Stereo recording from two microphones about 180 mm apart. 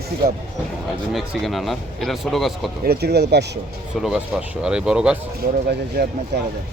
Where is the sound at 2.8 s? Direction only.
60° right (ahead or behind).